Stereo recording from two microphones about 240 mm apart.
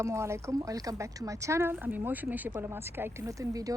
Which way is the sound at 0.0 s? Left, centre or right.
Centre.